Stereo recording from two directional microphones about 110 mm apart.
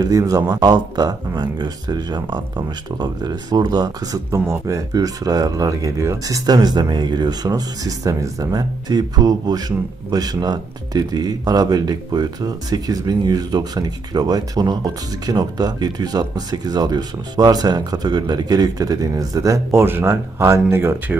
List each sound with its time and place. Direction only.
0.0 s speech: 35° right (ahead or behind)